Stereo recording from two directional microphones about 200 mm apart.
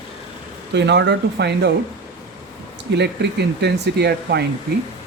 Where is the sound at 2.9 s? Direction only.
60° right (ahead or behind).